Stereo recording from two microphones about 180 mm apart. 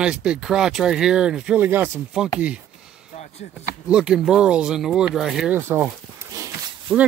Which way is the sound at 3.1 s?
40° left (ahead or behind).